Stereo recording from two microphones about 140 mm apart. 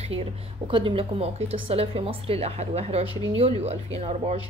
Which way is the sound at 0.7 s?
40° right (ahead or behind).